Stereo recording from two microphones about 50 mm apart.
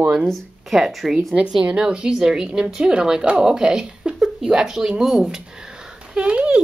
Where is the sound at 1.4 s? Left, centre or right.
Centre.